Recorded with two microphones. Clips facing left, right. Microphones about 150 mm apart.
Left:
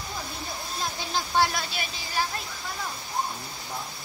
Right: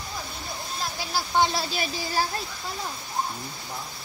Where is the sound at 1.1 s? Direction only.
15° right (ahead or behind).